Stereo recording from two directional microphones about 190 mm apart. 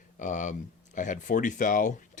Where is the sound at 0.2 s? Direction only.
40° left (ahead or behind).